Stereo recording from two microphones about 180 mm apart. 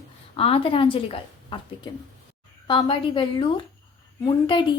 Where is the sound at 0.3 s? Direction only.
30° left (ahead or behind).